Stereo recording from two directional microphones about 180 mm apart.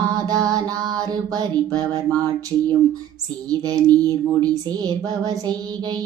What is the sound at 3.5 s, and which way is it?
Mantra, 20° right (ahead or behind).